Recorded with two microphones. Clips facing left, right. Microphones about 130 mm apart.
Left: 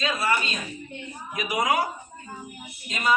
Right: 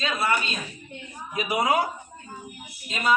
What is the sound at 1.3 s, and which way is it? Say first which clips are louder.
Speech: right 1 dB; 30° right (ahead or behind).